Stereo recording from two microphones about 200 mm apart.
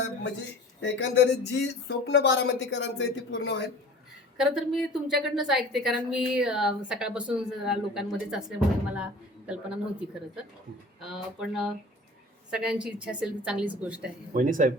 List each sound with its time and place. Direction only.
0.8 s speech: 65° left (ahead or behind)
4.4 s a woman's voice: 5° right (ahead or behind)
11.0 s a woman's voice: 5° right (ahead or behind)
14.3 s speech: 40° right (ahead or behind)